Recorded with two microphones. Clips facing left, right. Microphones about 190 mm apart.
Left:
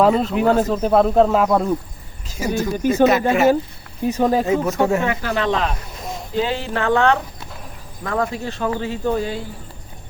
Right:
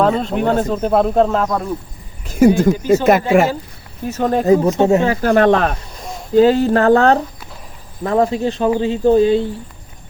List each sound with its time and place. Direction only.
0.0 s speech: 5° left (ahead or behind)
2.2 s speech: 55° right (ahead or behind)
4.1 s speech: 5° left (ahead or behind)
4.4 s speech: 35° right (ahead or behind)
4.7 s speech: 25° right (ahead or behind)
5.2 s speech: 50° right (ahead or behind)
6.0 s a sound: centre (ahead or behind)
6.3 s speech: 40° right (ahead or behind)
8.0 s speech: 25° right (ahead or behind)